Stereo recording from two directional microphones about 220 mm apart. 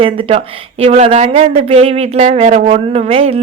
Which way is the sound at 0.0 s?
25° right (ahead or behind).